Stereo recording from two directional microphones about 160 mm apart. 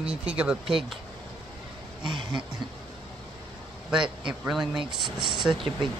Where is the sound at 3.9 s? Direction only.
5° right (ahead or behind).